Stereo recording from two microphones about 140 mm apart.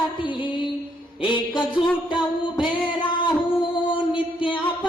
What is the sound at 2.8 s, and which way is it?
Music, 35° left (ahead or behind).